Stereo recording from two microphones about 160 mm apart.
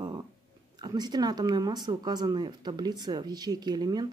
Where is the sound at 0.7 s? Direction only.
25° right (ahead or behind).